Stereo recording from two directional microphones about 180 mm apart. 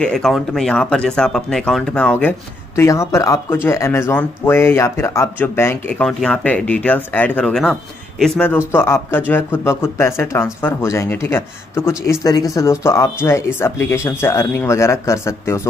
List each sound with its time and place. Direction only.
0.0 s speech: centre (ahead or behind)